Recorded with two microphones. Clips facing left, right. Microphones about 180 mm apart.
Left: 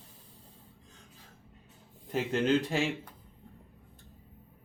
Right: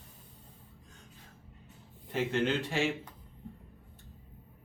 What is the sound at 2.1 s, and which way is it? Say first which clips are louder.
Speech: left 3 dB; 40° left (ahead or behind).